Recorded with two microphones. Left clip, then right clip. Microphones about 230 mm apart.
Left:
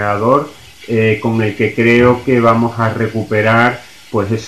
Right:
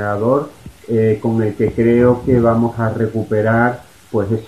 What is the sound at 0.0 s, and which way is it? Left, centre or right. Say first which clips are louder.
Speech: left 4 dB; centre.